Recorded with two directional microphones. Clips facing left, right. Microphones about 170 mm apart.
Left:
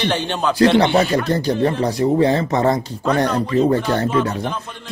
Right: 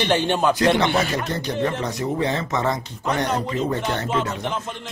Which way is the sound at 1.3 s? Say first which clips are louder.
Left 6 dB; 35° left (ahead or behind).